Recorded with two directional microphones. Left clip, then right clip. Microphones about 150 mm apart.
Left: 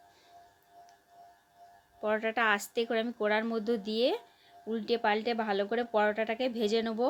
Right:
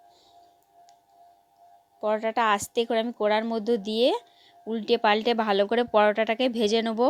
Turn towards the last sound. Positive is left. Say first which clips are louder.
# right 6 dB
turn(degrees=-60)  # may be behind; listen again after turning